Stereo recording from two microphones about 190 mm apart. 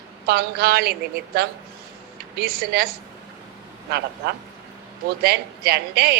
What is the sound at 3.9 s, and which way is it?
A woman's voice, 55° right (ahead or behind).